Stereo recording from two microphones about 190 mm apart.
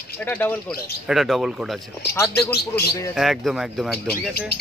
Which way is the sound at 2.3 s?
55° left (ahead or behind).